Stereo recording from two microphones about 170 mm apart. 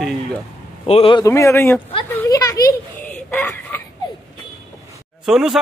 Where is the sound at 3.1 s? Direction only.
10° left (ahead or behind).